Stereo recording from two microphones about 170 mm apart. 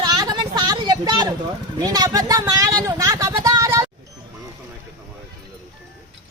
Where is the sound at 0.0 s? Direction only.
25° right (ahead or behind).